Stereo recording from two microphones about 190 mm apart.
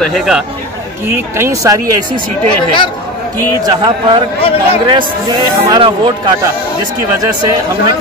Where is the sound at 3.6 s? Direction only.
20° right (ahead or behind).